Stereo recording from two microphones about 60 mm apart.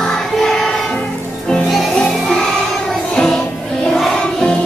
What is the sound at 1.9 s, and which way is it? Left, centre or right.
Music, centre.